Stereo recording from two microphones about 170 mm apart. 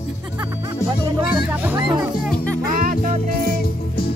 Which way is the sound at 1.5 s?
10° right (ahead or behind).